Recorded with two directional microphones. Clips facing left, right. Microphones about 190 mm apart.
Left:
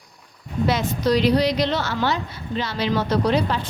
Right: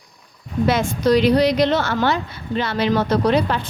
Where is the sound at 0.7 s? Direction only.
50° right (ahead or behind).